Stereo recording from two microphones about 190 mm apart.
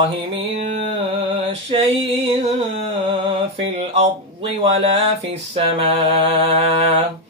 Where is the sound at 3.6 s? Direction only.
30° right (ahead or behind).